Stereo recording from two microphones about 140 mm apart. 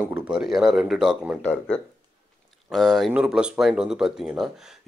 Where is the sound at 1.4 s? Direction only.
10° left (ahead or behind).